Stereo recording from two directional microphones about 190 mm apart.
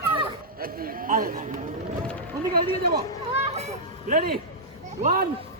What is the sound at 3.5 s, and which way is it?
Vehicle, 35° right (ahead or behind).